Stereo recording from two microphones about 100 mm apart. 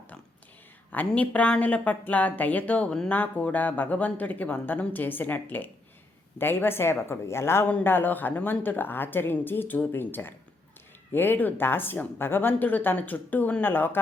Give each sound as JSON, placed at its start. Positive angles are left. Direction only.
{"t": 0.9, "sound": "speech", "side_deg": 15}